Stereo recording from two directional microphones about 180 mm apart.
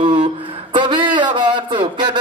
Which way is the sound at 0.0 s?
25° right (ahead or behind).